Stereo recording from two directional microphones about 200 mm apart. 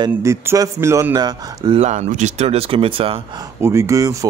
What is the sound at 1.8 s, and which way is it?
Speech, 35° right (ahead or behind).